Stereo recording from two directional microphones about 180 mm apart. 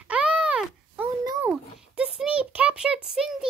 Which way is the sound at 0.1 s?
5° right (ahead or behind).